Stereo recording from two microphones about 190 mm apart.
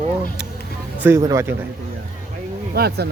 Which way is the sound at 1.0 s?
15° right (ahead or behind).